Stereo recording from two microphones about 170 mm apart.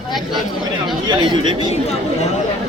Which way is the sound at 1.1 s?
25° right (ahead or behind).